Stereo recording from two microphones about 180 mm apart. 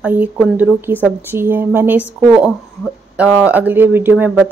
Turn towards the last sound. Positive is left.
turn(degrees=-10)  # may be behind; listen again after turning